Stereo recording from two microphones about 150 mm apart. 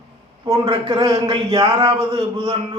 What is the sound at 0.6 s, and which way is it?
Speech, 30° right (ahead or behind).